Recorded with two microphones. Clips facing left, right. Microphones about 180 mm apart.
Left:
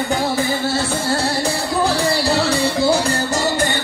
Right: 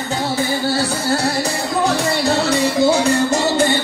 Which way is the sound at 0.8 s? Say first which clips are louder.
Right 1 dB; 25° left (ahead or behind).